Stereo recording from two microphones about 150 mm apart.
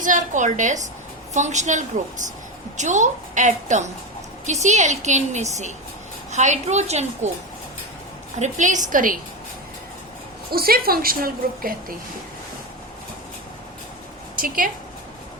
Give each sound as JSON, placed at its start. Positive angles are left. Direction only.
{"t": 0.0, "sound": "a woman's voice", "side_deg": -60}
{"t": 8.4, "sound": "a woman's voice", "side_deg": -55}
{"t": 10.5, "sound": "a woman's voice", "side_deg": -85}
{"t": 14.3, "sound": "a woman's voice", "side_deg": -70}